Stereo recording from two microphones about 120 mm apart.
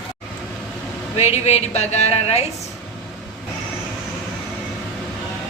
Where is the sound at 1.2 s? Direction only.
65° left (ahead or behind).